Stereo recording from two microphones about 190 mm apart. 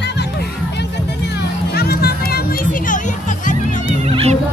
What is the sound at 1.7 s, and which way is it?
Music, 55° left (ahead or behind).